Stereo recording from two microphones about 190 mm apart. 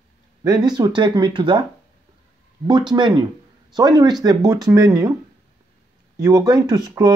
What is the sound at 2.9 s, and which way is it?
Speech, 25° right (ahead or behind).